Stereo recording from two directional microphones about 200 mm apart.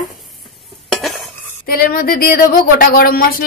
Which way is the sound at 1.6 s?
45° left (ahead or behind).